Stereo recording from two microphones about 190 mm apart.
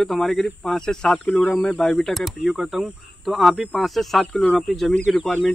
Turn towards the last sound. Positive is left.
turn(degrees=5)  # may be behind; listen again after turning